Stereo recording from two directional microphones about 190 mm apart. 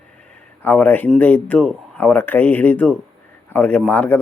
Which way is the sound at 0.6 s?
10° left (ahead or behind).